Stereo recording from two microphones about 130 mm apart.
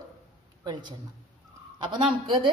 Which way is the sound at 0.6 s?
35° right (ahead or behind).